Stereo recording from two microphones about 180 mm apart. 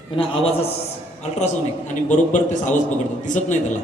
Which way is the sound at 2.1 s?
45° left (ahead or behind).